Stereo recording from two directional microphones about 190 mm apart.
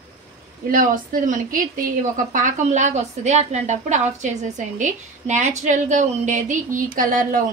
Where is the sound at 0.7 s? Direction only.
45° right (ahead or behind).